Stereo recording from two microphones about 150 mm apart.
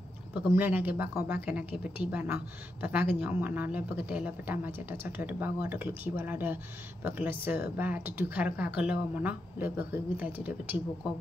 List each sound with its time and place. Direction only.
0.3 s speech: 10° right (ahead or behind)